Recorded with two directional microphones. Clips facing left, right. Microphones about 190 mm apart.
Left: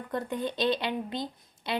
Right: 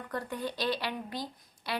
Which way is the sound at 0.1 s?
20° left (ahead or behind).